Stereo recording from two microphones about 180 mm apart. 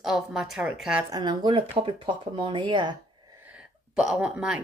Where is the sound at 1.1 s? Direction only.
25° right (ahead or behind).